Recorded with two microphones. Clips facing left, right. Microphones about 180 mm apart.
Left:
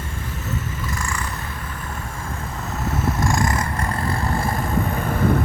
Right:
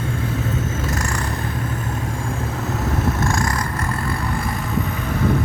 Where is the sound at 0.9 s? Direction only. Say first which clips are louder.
Right 4 dB; 65° right (ahead or behind).